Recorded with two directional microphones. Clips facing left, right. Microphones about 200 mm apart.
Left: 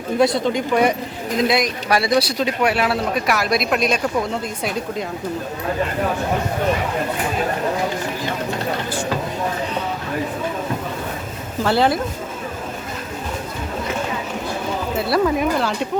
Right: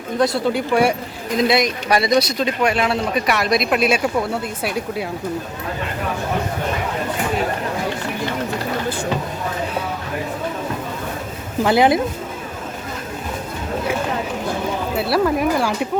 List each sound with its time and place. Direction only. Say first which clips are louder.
0.2 s speech: even; 5° right (ahead or behind)
11.6 s speech: right 3 dB; 15° right (ahead or behind)
14.9 s speech: even; centre (ahead or behind)